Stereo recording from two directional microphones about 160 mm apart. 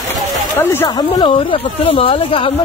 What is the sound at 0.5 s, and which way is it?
Speech, 20° left (ahead or behind).